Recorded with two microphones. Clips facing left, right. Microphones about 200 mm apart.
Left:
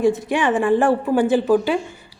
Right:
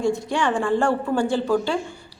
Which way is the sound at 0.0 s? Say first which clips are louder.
Left 4 dB; 20° left (ahead or behind).